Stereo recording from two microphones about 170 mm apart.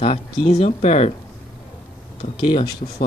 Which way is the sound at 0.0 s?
40° left (ahead or behind).